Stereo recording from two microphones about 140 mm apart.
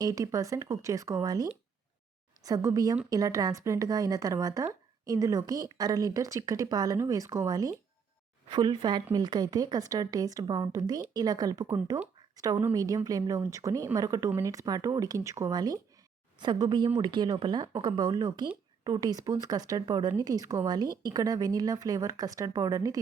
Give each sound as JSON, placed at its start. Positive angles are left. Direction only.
{"t": 0.0, "sound": "speech", "side_deg": -25}